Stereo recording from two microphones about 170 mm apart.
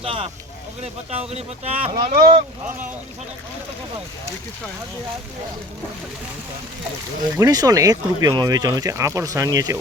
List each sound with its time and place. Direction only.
0.0 s speech: 35° right (ahead or behind)
2.1 s speech: 60° right (ahead or behind)
7.3 s speech: 20° right (ahead or behind)